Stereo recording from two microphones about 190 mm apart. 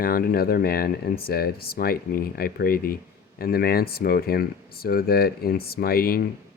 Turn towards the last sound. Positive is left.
turn(degrees=50)  # may be behind; listen again after turning